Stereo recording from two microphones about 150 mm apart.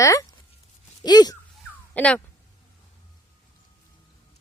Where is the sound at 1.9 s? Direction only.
10° left (ahead or behind).